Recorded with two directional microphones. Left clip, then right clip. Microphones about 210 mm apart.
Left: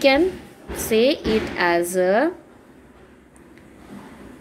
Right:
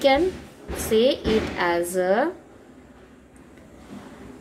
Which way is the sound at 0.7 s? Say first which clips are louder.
Left 1 dB; 20° left (ahead or behind).